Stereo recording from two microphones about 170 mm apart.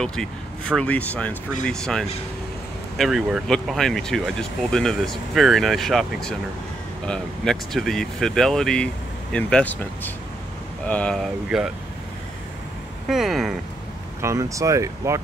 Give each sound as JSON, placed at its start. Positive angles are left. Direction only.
{"t": 0.0, "sound": "speech", "side_deg": 5}
{"t": 13.1, "sound": "speech", "side_deg": 0}
{"t": 14.2, "sound": "speech", "side_deg": -20}